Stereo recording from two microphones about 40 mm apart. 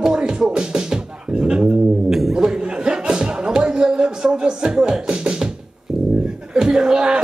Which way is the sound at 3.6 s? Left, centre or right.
Right.